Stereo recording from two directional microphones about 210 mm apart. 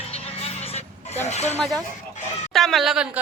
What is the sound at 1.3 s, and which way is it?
Speech, 30° left (ahead or behind).